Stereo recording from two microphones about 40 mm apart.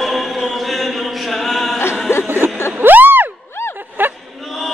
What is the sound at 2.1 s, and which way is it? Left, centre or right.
Chuckle, left.